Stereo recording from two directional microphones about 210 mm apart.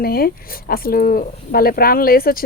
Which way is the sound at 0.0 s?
45° left (ahead or behind).